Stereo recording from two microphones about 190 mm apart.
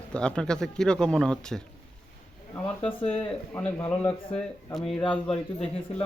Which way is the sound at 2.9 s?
30° left (ahead or behind).